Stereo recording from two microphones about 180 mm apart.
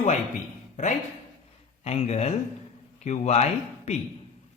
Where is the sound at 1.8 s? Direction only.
35° left (ahead or behind).